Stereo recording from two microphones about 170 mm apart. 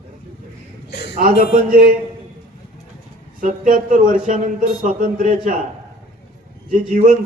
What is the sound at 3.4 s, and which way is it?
Speech, 55° right (ahead or behind).